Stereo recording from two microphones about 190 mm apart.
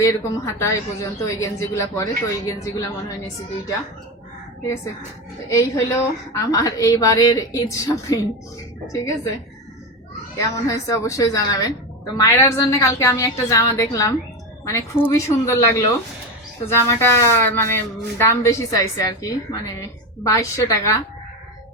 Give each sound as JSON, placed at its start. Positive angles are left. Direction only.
{"t": 0.0, "sound": "a woman's voice", "side_deg": 15}
{"t": 5.5, "sound": "a woman's voice", "side_deg": 15}
{"t": 10.3, "sound": "a woman's voice", "side_deg": 15}